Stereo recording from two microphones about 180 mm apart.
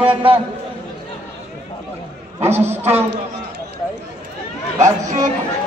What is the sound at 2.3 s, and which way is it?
Speech, 15° right (ahead or behind).